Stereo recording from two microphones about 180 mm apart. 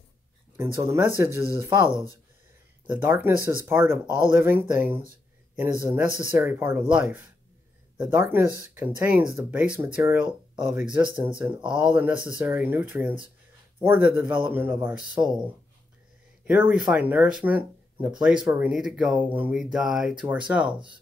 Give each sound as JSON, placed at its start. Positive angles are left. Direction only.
{"t": 0.6, "sound": "speech", "side_deg": -15}
{"t": 1.9, "sound": "speech", "side_deg": 20}
{"t": 2.9, "sound": "speech", "side_deg": -10}
{"t": 16.4, "sound": "speech", "side_deg": -10}